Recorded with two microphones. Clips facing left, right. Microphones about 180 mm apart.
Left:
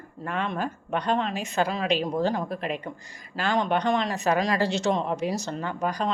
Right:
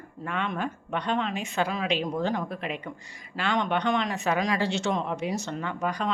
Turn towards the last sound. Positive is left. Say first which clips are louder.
# left 2 dB
turn(degrees=40)  # may be behind; listen again after turning